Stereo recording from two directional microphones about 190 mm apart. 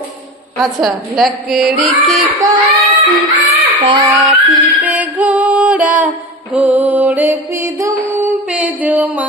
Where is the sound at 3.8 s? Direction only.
25° right (ahead or behind).